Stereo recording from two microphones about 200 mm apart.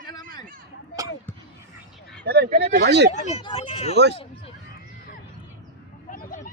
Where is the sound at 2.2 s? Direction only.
55° right (ahead or behind).